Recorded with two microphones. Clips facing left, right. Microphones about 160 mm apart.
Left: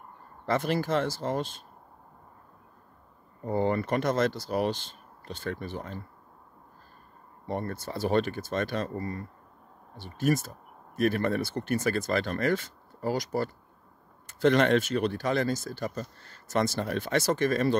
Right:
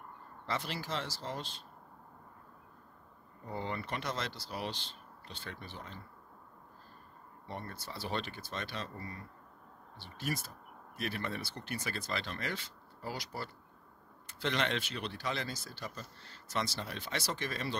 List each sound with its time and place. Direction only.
0.5 s speech: 50° left (ahead or behind)
3.4 s speech: 50° left (ahead or behind)
7.4 s speech: 50° left (ahead or behind)